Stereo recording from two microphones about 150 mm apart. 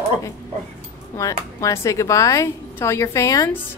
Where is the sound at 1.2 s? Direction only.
20° left (ahead or behind).